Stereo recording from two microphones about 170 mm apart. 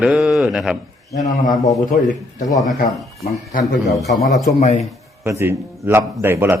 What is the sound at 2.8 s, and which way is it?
Speech, 60° left (ahead or behind).